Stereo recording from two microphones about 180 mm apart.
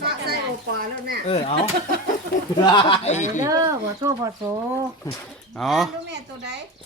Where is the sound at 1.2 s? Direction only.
35° left (ahead or behind).